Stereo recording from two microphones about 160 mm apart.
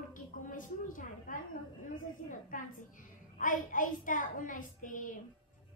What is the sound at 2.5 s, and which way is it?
A woman's voice, 55° left (ahead or behind).